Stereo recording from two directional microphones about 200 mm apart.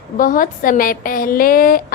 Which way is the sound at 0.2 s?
45° left (ahead or behind).